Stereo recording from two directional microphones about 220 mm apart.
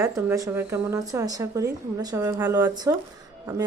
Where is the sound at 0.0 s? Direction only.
15° right (ahead or behind).